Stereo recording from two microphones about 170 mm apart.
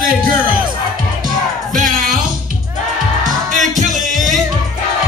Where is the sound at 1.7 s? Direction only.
50° right (ahead or behind).